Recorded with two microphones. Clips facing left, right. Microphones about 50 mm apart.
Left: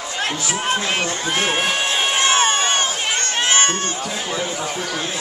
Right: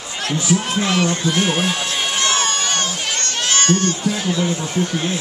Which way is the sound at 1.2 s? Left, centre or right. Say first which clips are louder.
Right 1 dB; left.